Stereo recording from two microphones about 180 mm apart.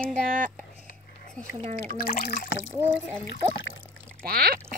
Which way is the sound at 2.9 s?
80° left.